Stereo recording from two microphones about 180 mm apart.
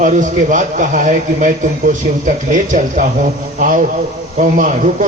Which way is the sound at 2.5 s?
45° right (ahead or behind).